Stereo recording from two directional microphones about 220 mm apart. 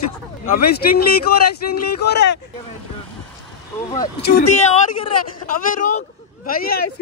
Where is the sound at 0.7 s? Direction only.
45° left (ahead or behind).